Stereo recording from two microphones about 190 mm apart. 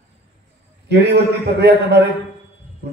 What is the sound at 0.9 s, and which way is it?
A man's voice, 60° right (ahead or behind).